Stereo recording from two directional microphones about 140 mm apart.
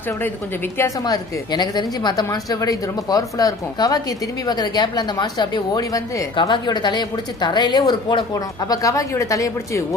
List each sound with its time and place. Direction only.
1.0 s a woman's voice: 30° left (ahead or behind)